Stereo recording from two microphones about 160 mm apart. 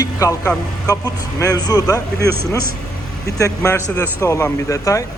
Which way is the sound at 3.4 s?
20° left (ahead or behind).